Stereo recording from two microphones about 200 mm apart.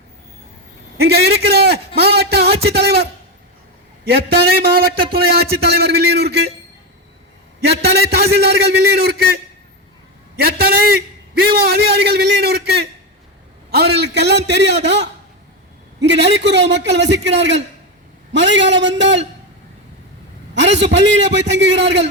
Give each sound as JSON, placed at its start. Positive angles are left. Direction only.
{"t": 0.9, "sound": "a sound", "side_deg": -55}
{"t": 4.1, "sound": "a man's voice", "side_deg": -50}
{"t": 7.6, "sound": "a man's voice", "side_deg": -55}
{"t": 10.4, "sound": "a man's voice", "side_deg": -50}
{"t": 20.6, "sound": "a man's voice", "side_deg": -60}